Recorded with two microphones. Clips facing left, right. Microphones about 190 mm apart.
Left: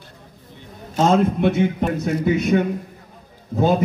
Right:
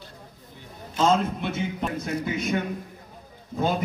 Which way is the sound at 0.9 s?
60° left (ahead or behind).